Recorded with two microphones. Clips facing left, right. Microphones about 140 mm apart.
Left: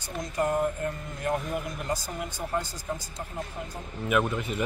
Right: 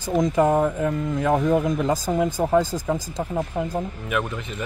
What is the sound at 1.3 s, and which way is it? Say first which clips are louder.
Speech: right 9 dB; 90° right.